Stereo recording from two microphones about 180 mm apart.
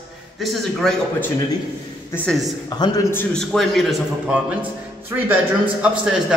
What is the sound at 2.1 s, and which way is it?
Speech, 5° left (ahead or behind).